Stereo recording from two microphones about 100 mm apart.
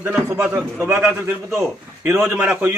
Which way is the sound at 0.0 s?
10° right (ahead or behind).